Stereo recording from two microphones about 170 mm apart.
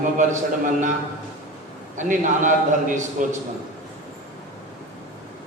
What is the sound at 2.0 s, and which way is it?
A man's voice, 50° right (ahead or behind).